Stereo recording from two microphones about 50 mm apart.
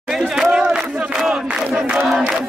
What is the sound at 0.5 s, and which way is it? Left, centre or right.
Crowd, centre.